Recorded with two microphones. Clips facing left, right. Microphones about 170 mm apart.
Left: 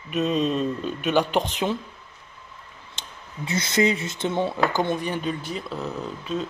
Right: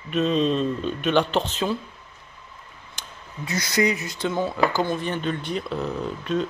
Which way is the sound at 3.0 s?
25° left (ahead or behind).